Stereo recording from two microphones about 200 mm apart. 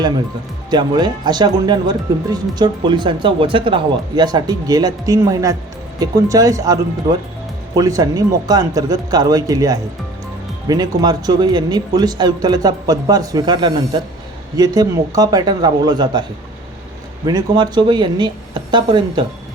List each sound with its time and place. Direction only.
0.7 s speech: 20° right (ahead or behind)
7.8 s speech: 20° right (ahead or behind)
17.2 s speech: 20° right (ahead or behind)